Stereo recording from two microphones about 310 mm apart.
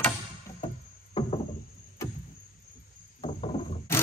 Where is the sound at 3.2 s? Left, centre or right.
Centre.